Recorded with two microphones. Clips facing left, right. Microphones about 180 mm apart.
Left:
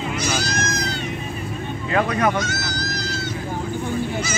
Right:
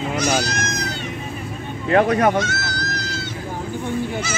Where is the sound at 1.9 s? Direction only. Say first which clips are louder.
Right 5 dB; 45° right (ahead or behind).